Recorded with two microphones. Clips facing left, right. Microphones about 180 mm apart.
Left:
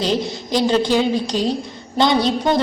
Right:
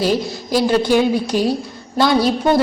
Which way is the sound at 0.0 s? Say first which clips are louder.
Right 2 dB; 5° right (ahead or behind).